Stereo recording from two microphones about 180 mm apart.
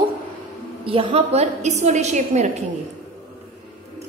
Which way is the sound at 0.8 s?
35° right (ahead or behind).